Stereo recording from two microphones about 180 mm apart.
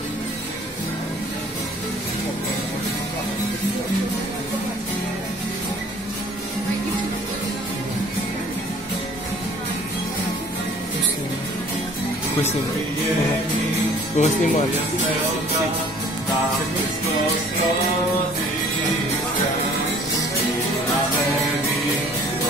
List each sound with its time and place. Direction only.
14.1 s speech: 40° left (ahead or behind)